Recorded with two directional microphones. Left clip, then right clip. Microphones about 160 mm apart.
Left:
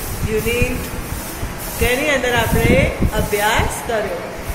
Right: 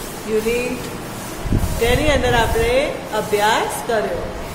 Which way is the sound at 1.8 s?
10° right (ahead or behind).